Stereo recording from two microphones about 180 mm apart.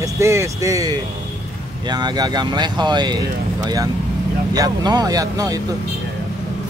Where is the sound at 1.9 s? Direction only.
25° right (ahead or behind).